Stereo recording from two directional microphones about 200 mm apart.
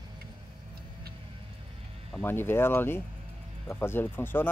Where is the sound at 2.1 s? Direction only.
10° left (ahead or behind).